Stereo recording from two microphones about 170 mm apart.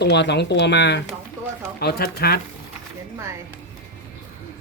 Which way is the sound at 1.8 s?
70° left (ahead or behind).